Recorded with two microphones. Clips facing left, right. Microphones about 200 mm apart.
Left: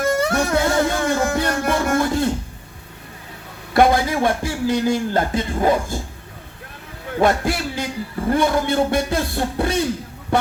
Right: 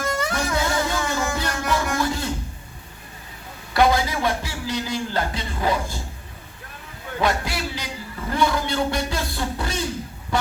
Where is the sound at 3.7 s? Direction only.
50° left (ahead or behind).